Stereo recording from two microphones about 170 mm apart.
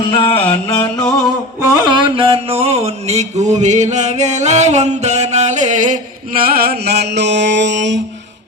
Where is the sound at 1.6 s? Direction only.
25° right (ahead or behind).